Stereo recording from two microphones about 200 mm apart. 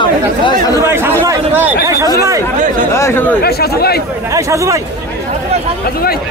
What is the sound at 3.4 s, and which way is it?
Speech, 50° left (ahead or behind).